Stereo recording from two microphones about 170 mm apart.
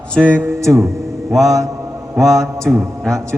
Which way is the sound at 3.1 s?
15° right (ahead or behind).